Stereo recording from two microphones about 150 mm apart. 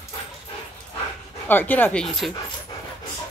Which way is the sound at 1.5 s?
10° left (ahead or behind).